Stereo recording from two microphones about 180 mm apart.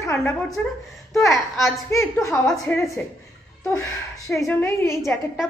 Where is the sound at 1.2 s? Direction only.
Centre (ahead or behind).